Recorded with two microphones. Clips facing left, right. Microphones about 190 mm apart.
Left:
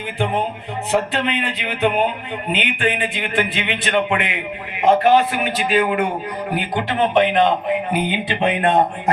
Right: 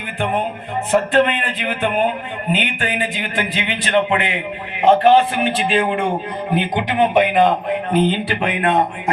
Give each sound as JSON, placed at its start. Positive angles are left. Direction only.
{"t": 0.9, "sound": "a man's voice", "side_deg": -50}
{"t": 7.9, "sound": "speech", "side_deg": 10}